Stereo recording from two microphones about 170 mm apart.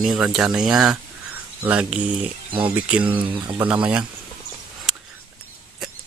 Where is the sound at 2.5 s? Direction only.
30° right (ahead or behind).